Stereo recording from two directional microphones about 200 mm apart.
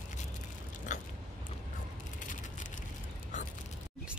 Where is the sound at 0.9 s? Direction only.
35° left (ahead or behind).